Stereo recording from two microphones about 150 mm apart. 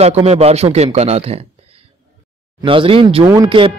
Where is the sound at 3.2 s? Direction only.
25° right (ahead or behind).